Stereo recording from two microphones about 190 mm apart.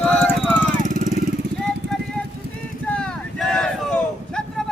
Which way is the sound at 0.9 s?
40° right (ahead or behind).